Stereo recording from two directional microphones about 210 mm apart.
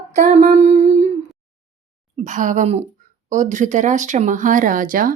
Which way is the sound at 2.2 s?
35° right (ahead or behind).